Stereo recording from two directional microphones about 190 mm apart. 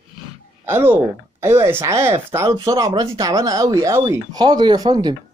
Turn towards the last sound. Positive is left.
turn(degrees=-25)  # may be behind; listen again after turning